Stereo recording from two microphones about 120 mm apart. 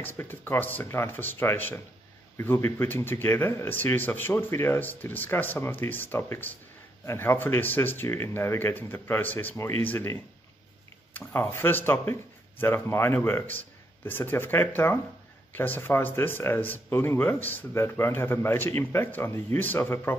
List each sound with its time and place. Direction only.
0.0 s speech: 20° left (ahead or behind)
11.1 s speech: 20° left (ahead or behind)